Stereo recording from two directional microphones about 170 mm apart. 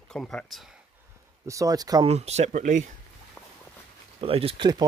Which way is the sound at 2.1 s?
40° right (ahead or behind).